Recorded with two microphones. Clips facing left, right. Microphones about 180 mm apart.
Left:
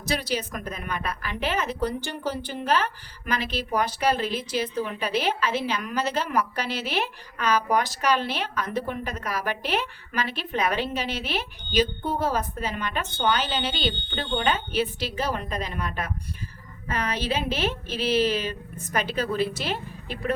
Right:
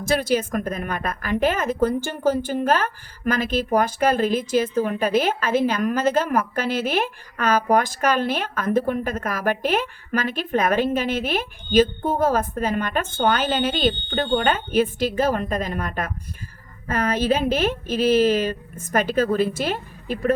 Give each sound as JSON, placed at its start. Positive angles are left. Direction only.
{"t": 0.0, "sound": "a woman's voice", "side_deg": -50}